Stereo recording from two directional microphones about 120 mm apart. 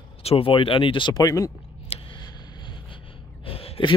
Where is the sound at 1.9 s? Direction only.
60° left (ahead or behind).